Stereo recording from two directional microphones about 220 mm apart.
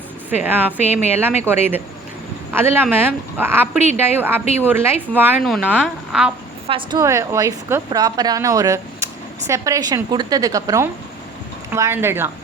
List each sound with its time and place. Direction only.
0.4 s a woman's voice: 10° right (ahead or behind)
6.7 s a woman's voice: 20° right (ahead or behind)